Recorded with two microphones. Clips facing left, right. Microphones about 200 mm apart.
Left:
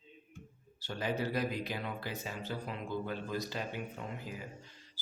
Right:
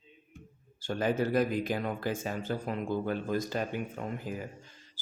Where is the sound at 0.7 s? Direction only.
50° right (ahead or behind).